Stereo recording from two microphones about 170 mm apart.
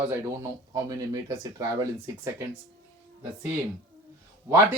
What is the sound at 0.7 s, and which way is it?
Speech, 20° right (ahead or behind).